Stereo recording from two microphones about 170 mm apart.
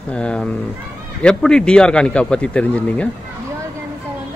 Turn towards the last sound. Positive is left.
turn(degrees=5)  # may be behind; listen again after turning